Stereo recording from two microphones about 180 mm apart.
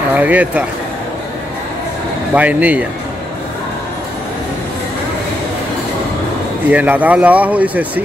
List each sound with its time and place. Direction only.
0.1 s speech: 10° right (ahead or behind)
2.3 s speech: 10° right (ahead or behind)
6.7 s speech: 10° right (ahead or behind)